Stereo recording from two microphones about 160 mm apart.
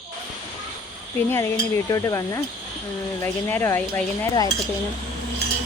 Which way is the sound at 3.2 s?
15° left (ahead or behind).